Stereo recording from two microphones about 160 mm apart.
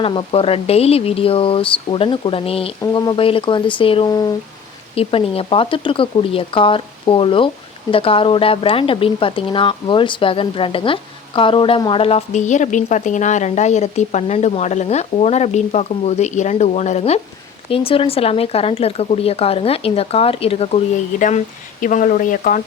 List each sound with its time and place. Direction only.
0.0 s speech: 35° left (ahead or behind)
2.8 s speech: 25° left (ahead or behind)
4.1 s speech: 25° left (ahead or behind)
4.9 s speech: 35° left (ahead or behind)
21.2 s speech: 55° left (ahead or behind)